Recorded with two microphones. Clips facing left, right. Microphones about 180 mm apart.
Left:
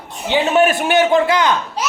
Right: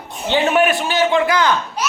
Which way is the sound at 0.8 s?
65° left (ahead or behind).